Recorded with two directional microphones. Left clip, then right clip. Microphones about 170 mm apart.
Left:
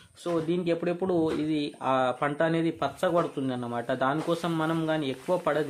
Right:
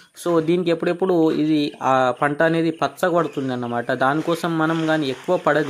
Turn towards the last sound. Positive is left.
turn(degrees=-35)  # may be behind; listen again after turning